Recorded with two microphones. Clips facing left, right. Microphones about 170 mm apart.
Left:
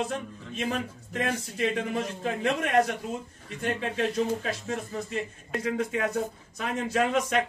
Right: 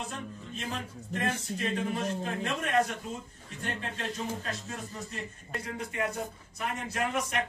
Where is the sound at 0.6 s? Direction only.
75° left (ahead or behind).